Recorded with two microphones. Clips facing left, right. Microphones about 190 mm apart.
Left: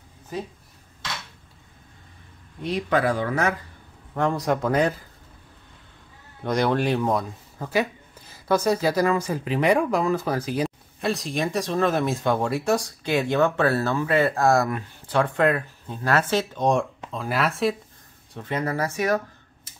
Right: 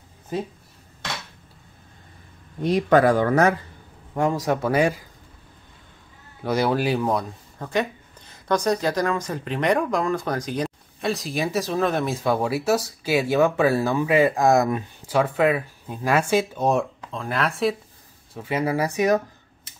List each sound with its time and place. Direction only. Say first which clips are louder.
2.6 s speech: right 6 dB; 45° right (ahead or behind)
4.1 s speech: right 1 dB; 10° right (ahead or behind)
6.4 s speech: right 1 dB; 5° right (ahead or behind)
15.0 s speech: right 1 dB; 5° right (ahead or behind)